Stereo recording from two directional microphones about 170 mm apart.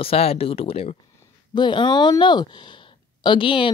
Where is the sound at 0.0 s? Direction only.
35° left (ahead or behind).